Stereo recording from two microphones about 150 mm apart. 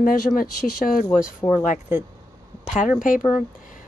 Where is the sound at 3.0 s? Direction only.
65° left (ahead or behind).